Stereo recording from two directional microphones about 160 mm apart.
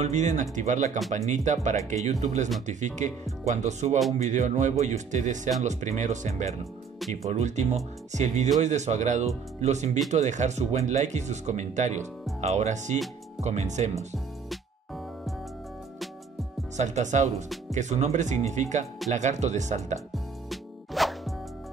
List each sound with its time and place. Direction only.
0.0 s speech: 50° right (ahead or behind)
16.7 s speech: 45° right (ahead or behind)
20.4 s music: centre (ahead or behind)